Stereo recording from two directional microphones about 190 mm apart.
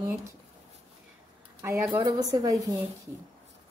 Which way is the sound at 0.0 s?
15° right (ahead or behind).